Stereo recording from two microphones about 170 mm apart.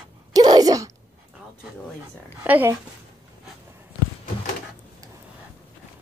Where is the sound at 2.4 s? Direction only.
10° right (ahead or behind).